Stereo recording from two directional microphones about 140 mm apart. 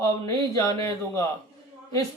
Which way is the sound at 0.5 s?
20° left (ahead or behind).